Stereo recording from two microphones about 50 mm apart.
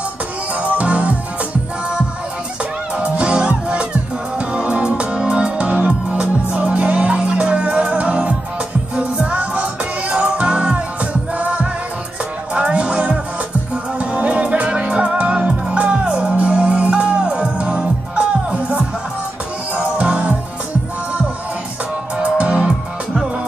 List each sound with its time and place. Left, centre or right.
0.6 s music: right
3.0 s music: right
22.2 s music: right